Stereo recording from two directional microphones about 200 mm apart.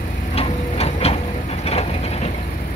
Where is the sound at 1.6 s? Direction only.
30° left (ahead or behind).